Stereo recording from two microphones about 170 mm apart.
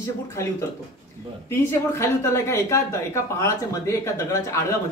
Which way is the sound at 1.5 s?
15° left (ahead or behind).